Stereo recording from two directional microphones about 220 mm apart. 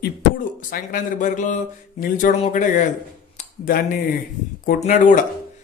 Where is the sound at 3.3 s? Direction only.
35° left (ahead or behind).